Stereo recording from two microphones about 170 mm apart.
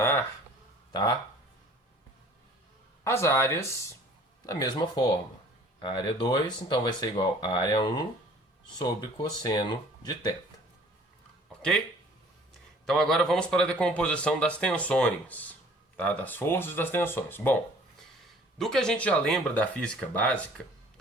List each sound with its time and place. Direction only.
3.0 s speech: 15° left (ahead or behind)
12.8 s speech: centre (ahead or behind)